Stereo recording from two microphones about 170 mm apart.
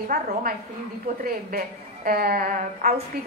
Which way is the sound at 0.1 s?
60° right (ahead or behind).